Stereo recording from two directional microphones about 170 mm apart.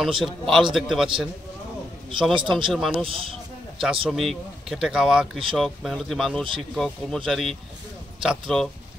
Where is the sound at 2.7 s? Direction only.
Centre (ahead or behind).